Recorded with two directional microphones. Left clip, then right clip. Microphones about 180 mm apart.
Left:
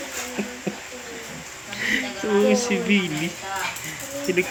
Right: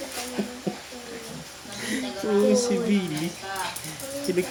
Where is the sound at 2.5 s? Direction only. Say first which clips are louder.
Left 2 dB; 5° right (ahead or behind).